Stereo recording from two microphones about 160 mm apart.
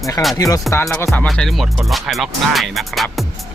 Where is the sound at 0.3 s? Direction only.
20° left (ahead or behind).